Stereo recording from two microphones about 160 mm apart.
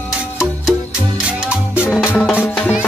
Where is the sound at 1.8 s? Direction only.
10° left (ahead or behind).